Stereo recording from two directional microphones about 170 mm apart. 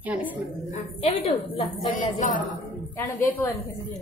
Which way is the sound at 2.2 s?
50° left (ahead or behind).